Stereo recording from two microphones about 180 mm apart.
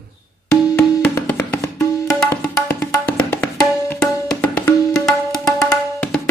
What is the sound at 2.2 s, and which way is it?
Music, 10° left (ahead or behind).